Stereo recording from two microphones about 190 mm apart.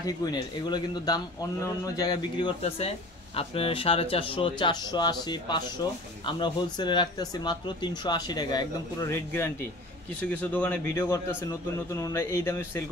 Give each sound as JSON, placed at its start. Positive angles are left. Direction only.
{"t": 0.0, "sound": "a man's voice", "side_deg": 20}